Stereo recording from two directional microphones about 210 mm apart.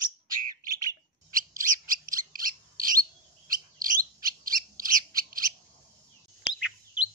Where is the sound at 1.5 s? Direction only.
40° right (ahead or behind).